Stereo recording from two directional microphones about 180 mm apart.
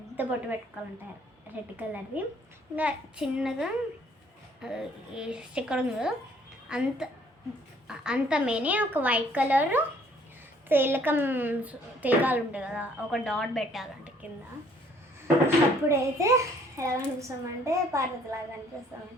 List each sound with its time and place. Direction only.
0.2 s a child's voice: 10° right (ahead or behind)
1.7 s a child's voice: 10° right (ahead or behind)
15.4 s a child's voice: 15° right (ahead or behind)